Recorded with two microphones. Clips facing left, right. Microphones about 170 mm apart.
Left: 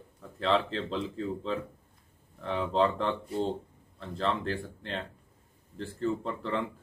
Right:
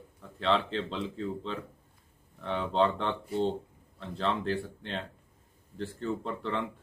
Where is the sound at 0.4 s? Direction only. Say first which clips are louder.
Left 1 dB; centre (ahead or behind).